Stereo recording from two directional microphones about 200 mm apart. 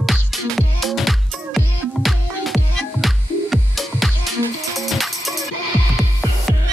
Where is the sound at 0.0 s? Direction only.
Centre (ahead or behind).